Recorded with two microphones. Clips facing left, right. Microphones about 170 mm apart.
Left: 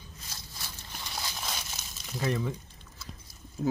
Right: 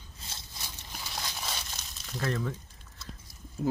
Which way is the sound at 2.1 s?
10° left (ahead or behind).